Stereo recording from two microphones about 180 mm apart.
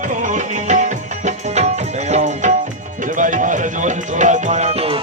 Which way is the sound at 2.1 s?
40° right (ahead or behind).